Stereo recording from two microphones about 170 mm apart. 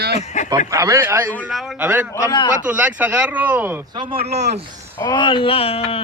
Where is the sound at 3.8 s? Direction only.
25° right (ahead or behind).